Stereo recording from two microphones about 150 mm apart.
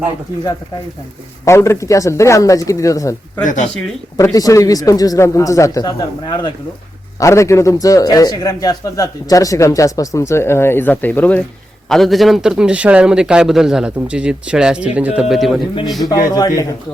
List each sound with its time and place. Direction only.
1.5 s a man's voice: 20° left (ahead or behind)
3.4 s speech: 55° left (ahead or behind)
4.2 s a man's voice: 20° left (ahead or behind)
7.2 s a man's voice: 20° left (ahead or behind); by 15.6 s centre (ahead or behind)
16.0 s a man's voice: 25° left (ahead or behind)